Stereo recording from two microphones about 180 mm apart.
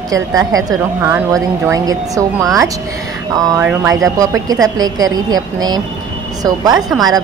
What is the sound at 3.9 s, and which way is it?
A woman's voice, 20° right (ahead or behind).